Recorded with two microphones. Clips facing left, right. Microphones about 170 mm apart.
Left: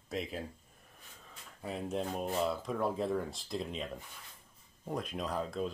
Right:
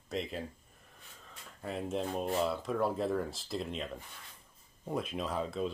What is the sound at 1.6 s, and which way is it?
Speech, centre (ahead or behind).